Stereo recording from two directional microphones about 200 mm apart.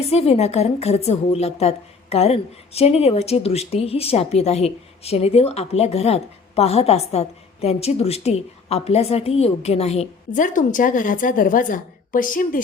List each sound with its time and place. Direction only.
0.0 s a woman's voice: 30° left (ahead or behind)